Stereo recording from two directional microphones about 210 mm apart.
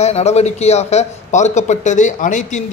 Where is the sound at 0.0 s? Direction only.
30° left (ahead or behind).